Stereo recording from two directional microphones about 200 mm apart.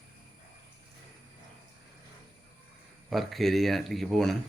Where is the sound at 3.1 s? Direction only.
Centre (ahead or behind).